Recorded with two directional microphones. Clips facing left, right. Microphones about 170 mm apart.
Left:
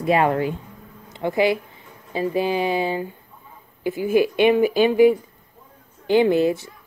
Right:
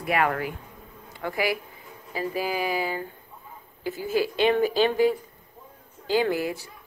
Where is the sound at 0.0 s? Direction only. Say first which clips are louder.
Left 6 dB; 25° left (ahead or behind).